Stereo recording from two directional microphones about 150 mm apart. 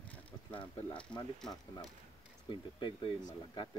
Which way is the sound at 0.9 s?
5° left (ahead or behind).